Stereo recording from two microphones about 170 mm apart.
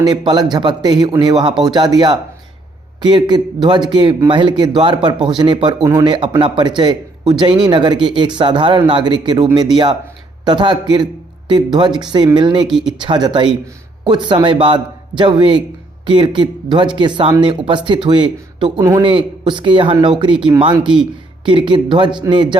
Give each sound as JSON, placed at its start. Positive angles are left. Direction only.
{"t": 0.0, "sound": "speech", "side_deg": -25}
{"t": 12.6, "sound": "speech", "side_deg": -5}
{"t": 13.0, "sound": "speech", "side_deg": -25}